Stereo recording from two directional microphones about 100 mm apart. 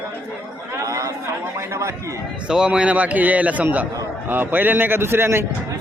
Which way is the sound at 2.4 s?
10° right (ahead or behind).